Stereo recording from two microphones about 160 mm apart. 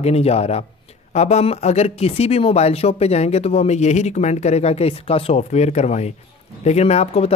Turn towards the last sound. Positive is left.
turn(degrees=40)  # may be behind; listen again after turning